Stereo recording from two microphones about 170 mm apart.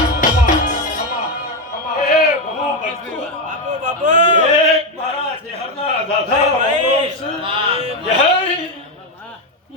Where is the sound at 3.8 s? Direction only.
45° right (ahead or behind).